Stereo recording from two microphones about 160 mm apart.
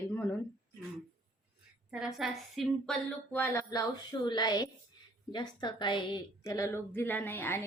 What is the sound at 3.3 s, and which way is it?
A woman's voice, 15° left (ahead or behind).